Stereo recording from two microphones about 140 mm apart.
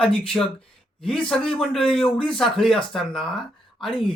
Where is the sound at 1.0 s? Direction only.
5° left (ahead or behind).